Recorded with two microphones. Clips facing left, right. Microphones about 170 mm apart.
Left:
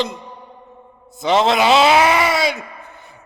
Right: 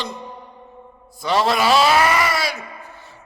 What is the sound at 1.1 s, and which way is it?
A man's voice, 20° left (ahead or behind).